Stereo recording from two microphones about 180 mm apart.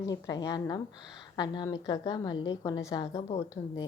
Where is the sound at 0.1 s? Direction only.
20° left (ahead or behind).